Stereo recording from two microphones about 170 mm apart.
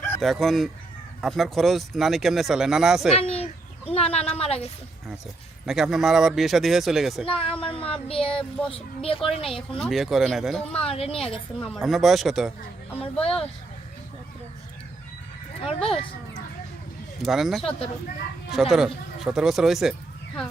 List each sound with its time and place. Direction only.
0.2 s speech: centre (ahead or behind)
3.1 s speech: 35° left (ahead or behind)
5.6 s speech: centre (ahead or behind)
7.3 s speech: 30° left (ahead or behind)
7.6 s child singing: 30° left (ahead or behind)
8.1 s speech: 35° left (ahead or behind)
9.7 s speech: centre (ahead or behind)
10.8 s speech: 35° left (ahead or behind)
11.6 s speech: centre (ahead or behind)
13.0 s speech: 35° left (ahead or behind)
15.6 s speech: 35° left (ahead or behind)
17.2 s speech: centre (ahead or behind)